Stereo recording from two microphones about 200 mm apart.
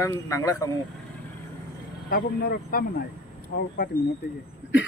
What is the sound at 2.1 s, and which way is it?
Speech, 50° left (ahead or behind).